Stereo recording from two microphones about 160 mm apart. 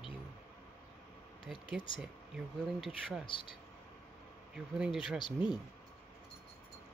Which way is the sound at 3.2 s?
30° left (ahead or behind).